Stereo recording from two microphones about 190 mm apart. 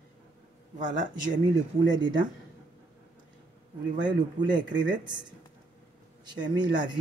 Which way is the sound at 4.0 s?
25° right (ahead or behind).